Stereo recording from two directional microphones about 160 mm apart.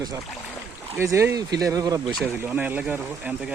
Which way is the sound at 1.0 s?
15° right (ahead or behind).